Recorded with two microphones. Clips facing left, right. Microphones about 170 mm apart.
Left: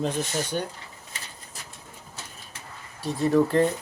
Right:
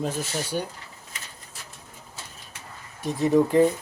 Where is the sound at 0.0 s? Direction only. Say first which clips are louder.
Left 1 dB; 5° right (ahead or behind).